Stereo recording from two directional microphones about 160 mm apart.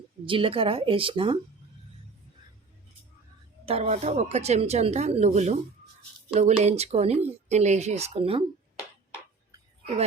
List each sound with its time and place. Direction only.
0.3 s speech: 35° right (ahead or behind)
3.7 s speech: 45° right (ahead or behind)